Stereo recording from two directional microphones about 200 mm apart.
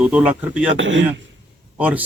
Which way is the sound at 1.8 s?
5° right (ahead or behind).